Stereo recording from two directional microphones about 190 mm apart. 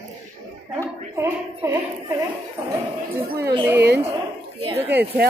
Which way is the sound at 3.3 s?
60° right (ahead or behind).